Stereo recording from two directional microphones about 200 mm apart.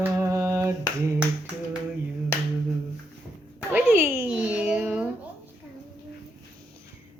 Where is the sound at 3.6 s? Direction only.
10° right (ahead or behind).